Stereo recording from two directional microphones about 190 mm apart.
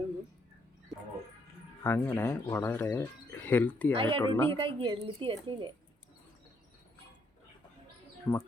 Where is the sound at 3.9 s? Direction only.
30° right (ahead or behind).